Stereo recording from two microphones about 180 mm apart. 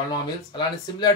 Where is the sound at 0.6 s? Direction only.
25° left (ahead or behind).